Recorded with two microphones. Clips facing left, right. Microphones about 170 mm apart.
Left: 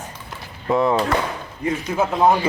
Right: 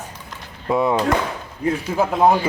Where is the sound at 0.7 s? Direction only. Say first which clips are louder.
Even; 5° right (ahead or behind).